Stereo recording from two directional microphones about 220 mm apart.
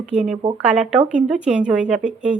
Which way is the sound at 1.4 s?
35° right (ahead or behind).